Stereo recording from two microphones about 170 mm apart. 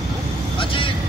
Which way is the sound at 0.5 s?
30° left (ahead or behind).